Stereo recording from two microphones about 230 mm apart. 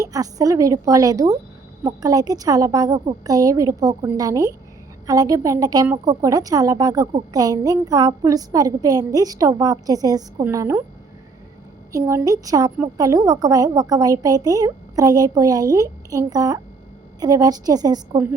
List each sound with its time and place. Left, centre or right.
0.0 s a woman's voice: centre
11.9 s a woman's voice: centre